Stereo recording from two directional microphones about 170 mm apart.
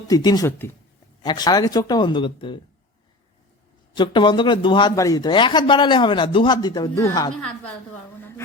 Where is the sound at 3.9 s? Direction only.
25° left (ahead or behind).